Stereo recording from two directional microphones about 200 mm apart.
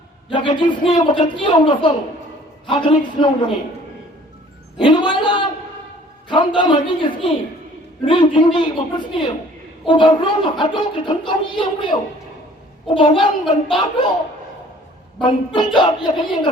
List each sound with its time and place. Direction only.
0.3 s speech: 25° left (ahead or behind)
4.8 s speech: 25° left (ahead or behind)
13.4 s speech: centre (ahead or behind)
15.5 s speech: 25° left (ahead or behind)